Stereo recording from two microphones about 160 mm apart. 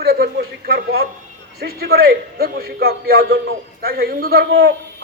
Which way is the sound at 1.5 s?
75° right (ahead or behind).